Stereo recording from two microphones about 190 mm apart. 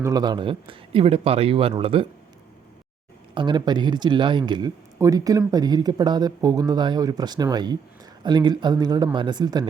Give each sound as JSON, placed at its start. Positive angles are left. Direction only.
{"t": 0.0, "sound": "speech", "side_deg": -20}
{"t": 3.3, "sound": "speech", "side_deg": -25}